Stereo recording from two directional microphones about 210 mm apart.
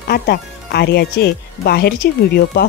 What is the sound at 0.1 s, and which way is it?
Speech, 50° left (ahead or behind).